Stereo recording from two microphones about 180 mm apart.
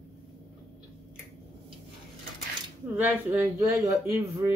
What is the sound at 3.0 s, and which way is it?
Speech, 10° right (ahead or behind).